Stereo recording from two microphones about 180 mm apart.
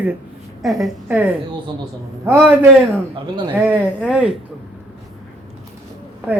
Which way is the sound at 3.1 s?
30° right (ahead or behind).